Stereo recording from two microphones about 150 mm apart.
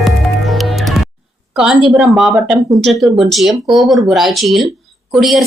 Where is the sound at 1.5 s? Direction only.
5° right (ahead or behind).